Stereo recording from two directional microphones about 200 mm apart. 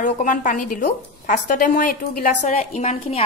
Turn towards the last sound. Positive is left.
turn(degrees=35)  # may be behind; listen again after turning